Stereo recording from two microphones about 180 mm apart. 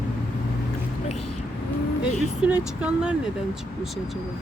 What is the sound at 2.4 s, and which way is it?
Speech, 5° right (ahead or behind).